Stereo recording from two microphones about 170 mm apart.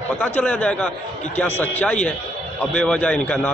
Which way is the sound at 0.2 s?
10° left (ahead or behind).